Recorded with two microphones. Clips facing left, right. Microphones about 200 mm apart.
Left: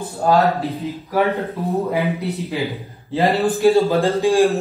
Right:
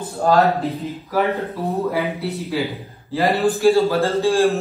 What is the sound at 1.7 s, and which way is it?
Speech, 15° left (ahead or behind).